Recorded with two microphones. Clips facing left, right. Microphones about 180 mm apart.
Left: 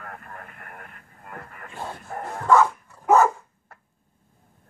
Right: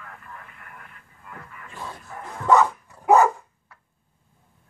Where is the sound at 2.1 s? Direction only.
50° left (ahead or behind).